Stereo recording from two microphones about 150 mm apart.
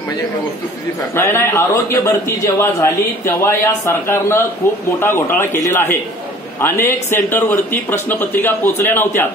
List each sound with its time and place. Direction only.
1.1 s a man's voice: 15° left (ahead or behind)